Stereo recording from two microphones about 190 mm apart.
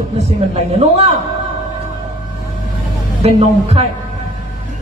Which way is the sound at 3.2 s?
35° right (ahead or behind).